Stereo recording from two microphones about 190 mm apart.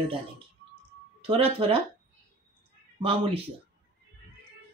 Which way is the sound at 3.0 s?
30° right (ahead or behind).